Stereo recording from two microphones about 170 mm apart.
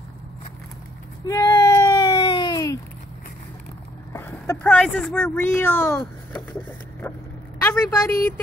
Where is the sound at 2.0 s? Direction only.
35° left (ahead or behind).